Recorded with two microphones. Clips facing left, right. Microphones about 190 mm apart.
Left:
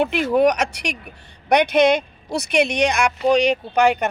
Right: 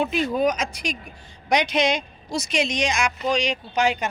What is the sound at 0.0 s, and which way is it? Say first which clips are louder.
Speech: left 5 dB; 70° left (ahead or behind).